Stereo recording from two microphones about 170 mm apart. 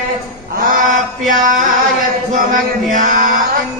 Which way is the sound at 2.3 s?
50° right (ahead or behind).